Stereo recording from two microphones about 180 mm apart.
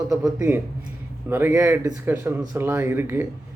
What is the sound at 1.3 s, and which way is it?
Speech, 10° right (ahead or behind).